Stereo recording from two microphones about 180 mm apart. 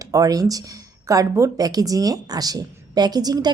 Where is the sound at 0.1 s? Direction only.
20° right (ahead or behind).